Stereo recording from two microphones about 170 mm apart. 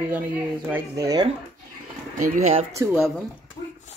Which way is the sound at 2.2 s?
40° right (ahead or behind).